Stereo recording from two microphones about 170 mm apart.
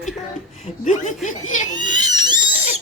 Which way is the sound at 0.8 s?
45° left (ahead or behind).